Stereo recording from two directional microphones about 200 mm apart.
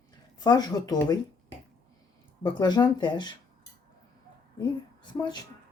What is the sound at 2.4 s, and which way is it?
Speech, 20° left (ahead or behind).